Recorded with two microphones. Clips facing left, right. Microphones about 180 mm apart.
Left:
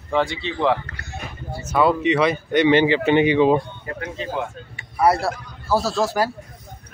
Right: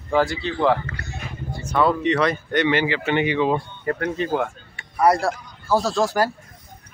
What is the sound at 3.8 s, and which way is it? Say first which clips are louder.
Speech: right 6 dB; 55° right (ahead or behind).